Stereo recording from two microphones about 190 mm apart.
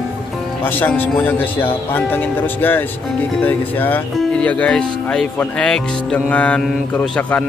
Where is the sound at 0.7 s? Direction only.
10° left (ahead or behind).